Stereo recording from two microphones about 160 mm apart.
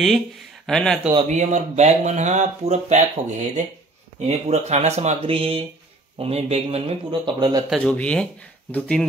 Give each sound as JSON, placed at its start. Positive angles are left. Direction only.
{"t": 0.7, "sound": "speech", "side_deg": 5}
{"t": 1.2, "sound": "speech", "side_deg": -45}
{"t": 7.7, "sound": "speech", "side_deg": 5}